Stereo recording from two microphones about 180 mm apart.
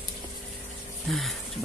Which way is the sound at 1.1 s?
Centre (ahead or behind).